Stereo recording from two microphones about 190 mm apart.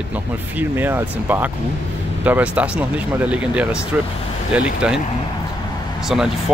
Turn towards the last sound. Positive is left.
turn(degrees=0)  # may be behind; listen again after turning